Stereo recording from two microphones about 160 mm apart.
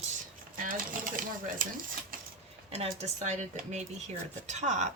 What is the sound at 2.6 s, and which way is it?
Speech, 40° right (ahead or behind).